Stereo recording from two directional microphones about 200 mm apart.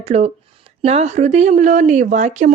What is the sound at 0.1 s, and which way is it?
Speech, 35° right (ahead or behind).